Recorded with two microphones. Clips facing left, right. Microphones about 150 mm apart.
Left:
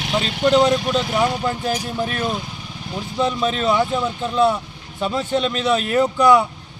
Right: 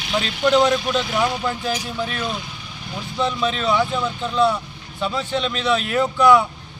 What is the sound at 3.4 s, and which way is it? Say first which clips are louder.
Speech: left 1 dB; 45° left (ahead or behind).